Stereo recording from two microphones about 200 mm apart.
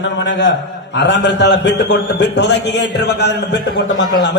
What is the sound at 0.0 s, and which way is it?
A man's voice, 65° left (ahead or behind).